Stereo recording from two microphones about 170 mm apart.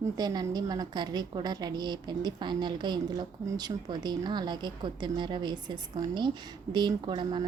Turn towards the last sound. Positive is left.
turn(degrees=-25)  # may be behind; listen again after turning